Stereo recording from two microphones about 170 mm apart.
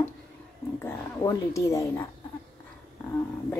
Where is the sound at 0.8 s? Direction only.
20° left (ahead or behind).